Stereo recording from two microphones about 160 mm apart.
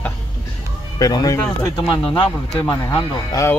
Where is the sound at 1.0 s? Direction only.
25° left (ahead or behind).